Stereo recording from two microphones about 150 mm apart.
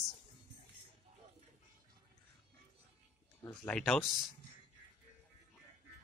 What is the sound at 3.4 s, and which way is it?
Speech, 10° left (ahead or behind).